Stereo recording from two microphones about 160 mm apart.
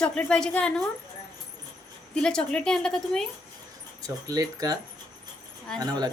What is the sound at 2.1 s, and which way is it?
A woman's voice, 5° left (ahead or behind).